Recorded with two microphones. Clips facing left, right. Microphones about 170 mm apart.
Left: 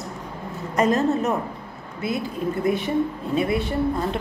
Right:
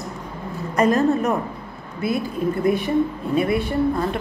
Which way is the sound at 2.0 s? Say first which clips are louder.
Right 3 dB; 20° left (ahead or behind).